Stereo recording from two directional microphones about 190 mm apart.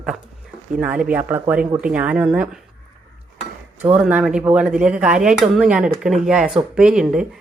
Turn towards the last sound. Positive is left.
turn(degrees=-5)  # may be behind; listen again after turning